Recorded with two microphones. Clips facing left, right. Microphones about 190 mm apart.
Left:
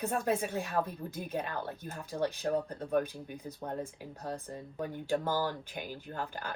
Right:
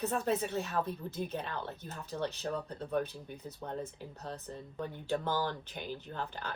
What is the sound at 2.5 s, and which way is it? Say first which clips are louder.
Speech: left 5 dB; 55° left (ahead or behind).